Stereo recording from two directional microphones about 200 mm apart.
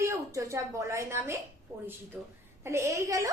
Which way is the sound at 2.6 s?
15° right (ahead or behind).